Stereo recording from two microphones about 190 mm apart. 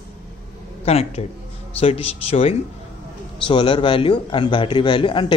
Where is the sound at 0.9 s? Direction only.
35° left (ahead or behind).